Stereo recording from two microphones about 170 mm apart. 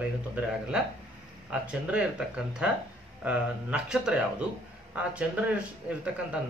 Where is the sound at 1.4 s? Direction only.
5° right (ahead or behind).